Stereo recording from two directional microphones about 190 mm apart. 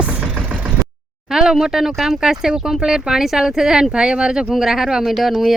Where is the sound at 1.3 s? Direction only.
Centre (ahead or behind).